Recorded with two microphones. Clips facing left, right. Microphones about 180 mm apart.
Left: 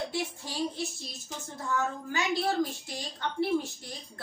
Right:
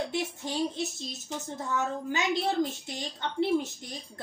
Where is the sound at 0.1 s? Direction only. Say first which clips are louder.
Right 3 dB; 20° right (ahead or behind).